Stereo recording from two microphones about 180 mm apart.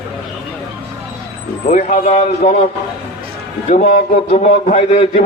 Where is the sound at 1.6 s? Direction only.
40° left (ahead or behind).